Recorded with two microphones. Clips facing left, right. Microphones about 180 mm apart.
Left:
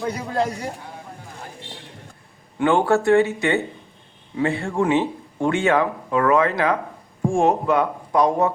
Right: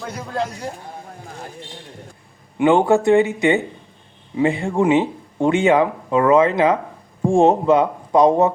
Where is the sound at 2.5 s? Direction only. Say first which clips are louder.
Right 3 dB; 15° right (ahead or behind).